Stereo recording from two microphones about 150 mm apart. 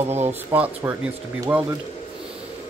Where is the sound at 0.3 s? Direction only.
15° right (ahead or behind).